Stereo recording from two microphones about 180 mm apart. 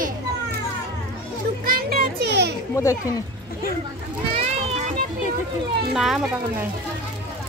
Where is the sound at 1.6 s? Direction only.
60° right (ahead or behind).